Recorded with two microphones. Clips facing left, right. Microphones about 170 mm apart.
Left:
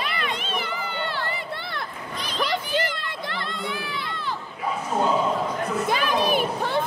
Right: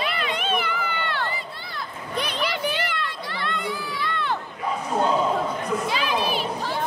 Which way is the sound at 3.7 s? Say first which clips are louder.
Right 2 dB; 65° left (ahead or behind).